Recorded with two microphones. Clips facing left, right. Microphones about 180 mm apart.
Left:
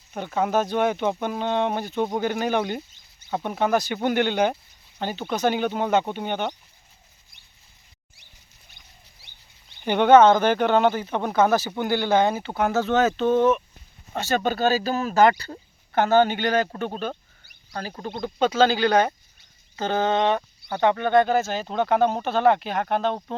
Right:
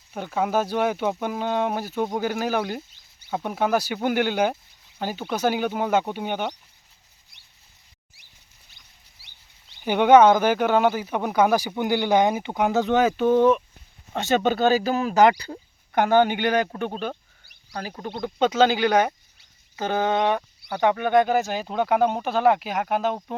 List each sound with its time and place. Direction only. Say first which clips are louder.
0.1 s speech: left 1 dB; 5° right (ahead or behind)
9.8 s speech: even; 10° right (ahead or behind)
14.6 s speech: right 2 dB; 15° right (ahead or behind)
18.0 s speech: right 1 dB; 15° right (ahead or behind)